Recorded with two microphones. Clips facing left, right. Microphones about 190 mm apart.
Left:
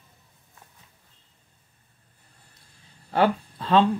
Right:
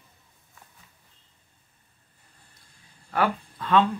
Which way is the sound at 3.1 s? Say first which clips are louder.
Left 4 dB; 30° left (ahead or behind).